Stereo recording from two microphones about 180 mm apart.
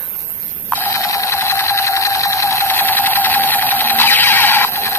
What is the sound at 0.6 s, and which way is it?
Sewing machine, 10° left (ahead or behind).